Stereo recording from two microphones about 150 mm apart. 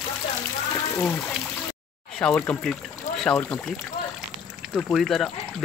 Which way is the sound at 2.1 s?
15° left (ahead or behind).